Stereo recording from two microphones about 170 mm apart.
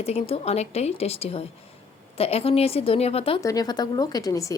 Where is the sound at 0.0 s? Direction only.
35° left (ahead or behind).